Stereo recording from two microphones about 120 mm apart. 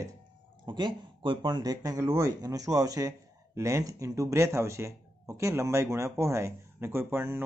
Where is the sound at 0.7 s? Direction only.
40° right (ahead or behind).